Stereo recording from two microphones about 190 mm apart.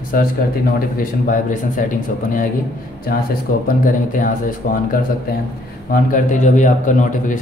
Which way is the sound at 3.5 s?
45° left (ahead or behind).